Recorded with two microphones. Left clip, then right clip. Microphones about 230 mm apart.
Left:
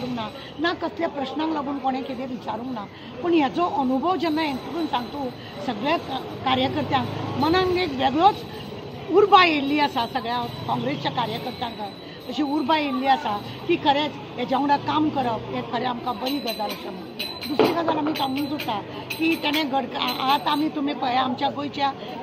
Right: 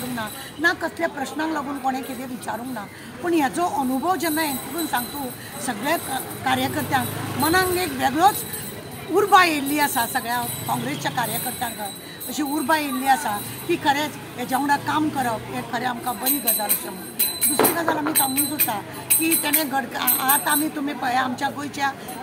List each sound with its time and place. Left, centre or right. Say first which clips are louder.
0.2 s speech: right 6 dB; right
3.3 s speech: even; right
17.7 s speech: right 1 dB; right